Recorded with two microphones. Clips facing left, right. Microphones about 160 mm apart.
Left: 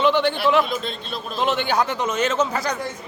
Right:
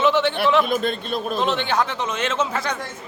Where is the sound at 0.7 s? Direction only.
50° right (ahead or behind).